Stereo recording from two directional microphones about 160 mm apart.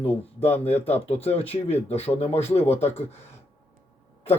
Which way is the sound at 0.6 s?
40° left (ahead or behind).